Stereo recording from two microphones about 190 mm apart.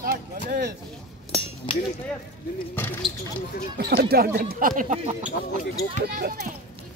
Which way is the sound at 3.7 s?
55° right (ahead or behind).